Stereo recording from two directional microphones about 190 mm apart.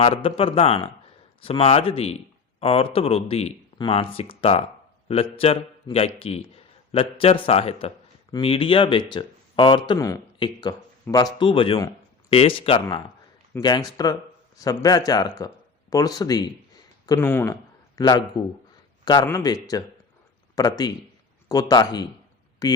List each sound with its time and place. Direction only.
0.0 s a man's voice: 30° left (ahead or behind)
20.6 s a man's voice: 20° left (ahead or behind)